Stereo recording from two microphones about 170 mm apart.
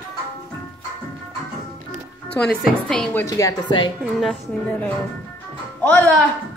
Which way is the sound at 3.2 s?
20° left (ahead or behind).